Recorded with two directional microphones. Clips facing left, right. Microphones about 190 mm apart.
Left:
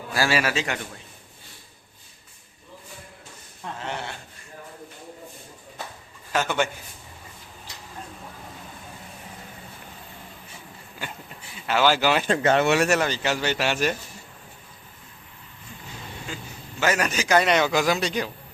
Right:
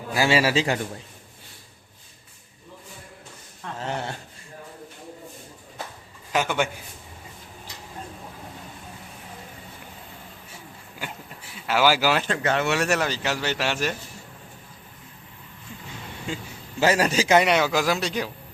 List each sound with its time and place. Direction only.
0.1 s a man's voice: 20° right (ahead or behind)
3.8 s a sound: 40° right (ahead or behind)
6.3 s a man's voice: 10° right (ahead or behind)
11.5 s speech: 5° right (ahead or behind)
12.3 s speech: 25° left (ahead or behind)
12.9 s speech: centre (ahead or behind)
16.8 s a man's voice: 30° right (ahead or behind)
17.4 s speech: 5° right (ahead or behind)